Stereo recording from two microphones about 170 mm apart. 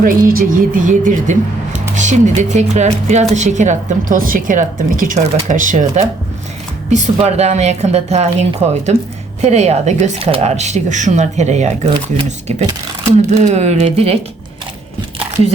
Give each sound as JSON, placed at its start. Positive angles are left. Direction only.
{"t": 0.0, "sound": "speech", "side_deg": -55}